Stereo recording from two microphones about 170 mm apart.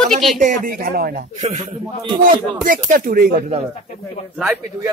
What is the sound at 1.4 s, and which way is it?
A man's voice, 45° right (ahead or behind).